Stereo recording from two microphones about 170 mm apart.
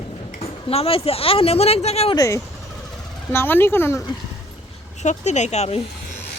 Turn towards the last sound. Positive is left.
turn(degrees=40)  # may be behind; listen again after turning